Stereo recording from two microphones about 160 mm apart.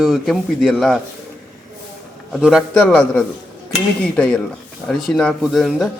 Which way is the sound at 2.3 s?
Centre (ahead or behind).